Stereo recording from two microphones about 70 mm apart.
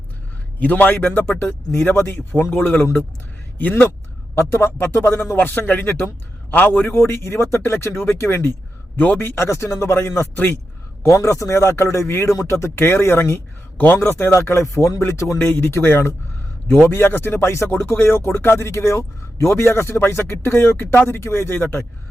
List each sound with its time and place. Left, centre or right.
0.6 s speech: left
4.4 s speech: left
9.0 s speech: left
11.0 s speech: left
14.0 s speech: left
15.4 s speech: left